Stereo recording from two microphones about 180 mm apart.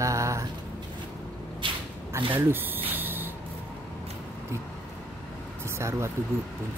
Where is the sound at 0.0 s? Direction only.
15° right (ahead or behind).